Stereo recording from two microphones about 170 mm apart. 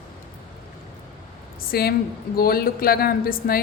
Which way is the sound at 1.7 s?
65° left (ahead or behind).